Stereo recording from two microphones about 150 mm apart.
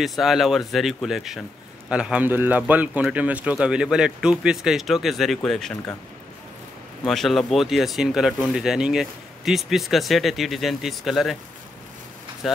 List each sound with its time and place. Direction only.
0.0 s speech: centre (ahead or behind)
7.1 s speech: centre (ahead or behind)
12.4 s speech: centre (ahead or behind)